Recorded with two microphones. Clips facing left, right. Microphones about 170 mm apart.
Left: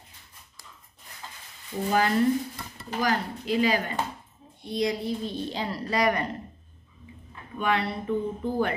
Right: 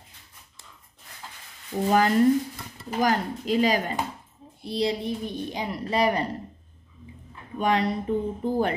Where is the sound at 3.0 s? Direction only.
45° right (ahead or behind).